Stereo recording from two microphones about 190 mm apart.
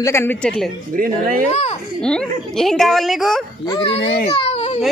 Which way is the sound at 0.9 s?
45° right (ahead or behind).